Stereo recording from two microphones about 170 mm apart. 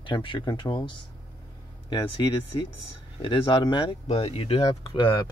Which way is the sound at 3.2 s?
30° left (ahead or behind).